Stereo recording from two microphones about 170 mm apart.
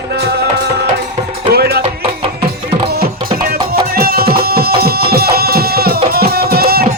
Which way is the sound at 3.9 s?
65° right (ahead or behind).